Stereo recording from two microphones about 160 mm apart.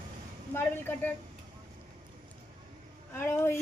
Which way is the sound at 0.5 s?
15° left (ahead or behind).